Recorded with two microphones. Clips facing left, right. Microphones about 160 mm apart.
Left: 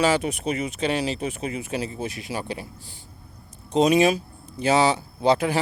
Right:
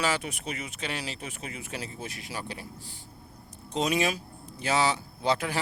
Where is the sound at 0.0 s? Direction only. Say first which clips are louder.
Left 8 dB; 25° left (ahead or behind).